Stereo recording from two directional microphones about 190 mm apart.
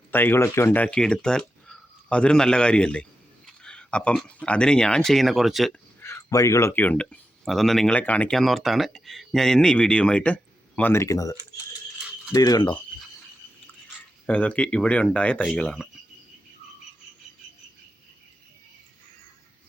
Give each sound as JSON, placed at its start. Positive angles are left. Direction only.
{"t": 0.1, "sound": "speech", "side_deg": 10}
{"t": 6.0, "sound": "speech", "side_deg": 15}
{"t": 14.3, "sound": "speech", "side_deg": 5}